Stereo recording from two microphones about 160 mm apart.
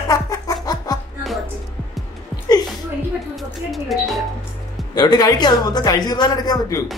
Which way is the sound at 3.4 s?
Centre (ahead or behind).